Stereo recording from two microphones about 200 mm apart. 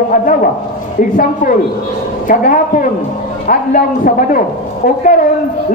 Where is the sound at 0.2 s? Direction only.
45° left (ahead or behind).